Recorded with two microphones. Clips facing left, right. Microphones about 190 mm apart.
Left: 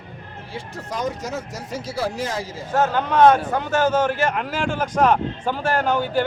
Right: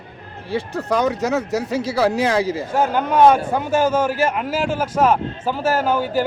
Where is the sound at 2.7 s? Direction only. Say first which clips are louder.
Right 1 dB; 10° right (ahead or behind).